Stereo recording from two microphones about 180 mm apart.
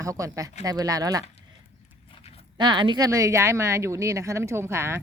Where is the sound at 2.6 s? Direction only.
25° right (ahead or behind).